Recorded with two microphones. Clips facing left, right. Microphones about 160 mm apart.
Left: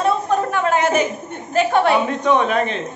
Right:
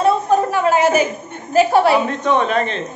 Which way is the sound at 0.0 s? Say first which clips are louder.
Right 3 dB; 5° right (ahead or behind).